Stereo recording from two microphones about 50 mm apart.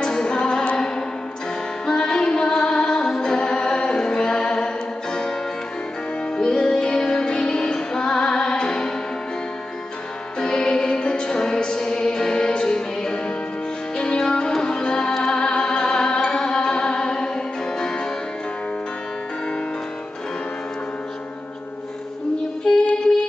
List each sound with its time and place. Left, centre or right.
0.0 s music: centre
6.3 s music: centre
10.4 s music: centre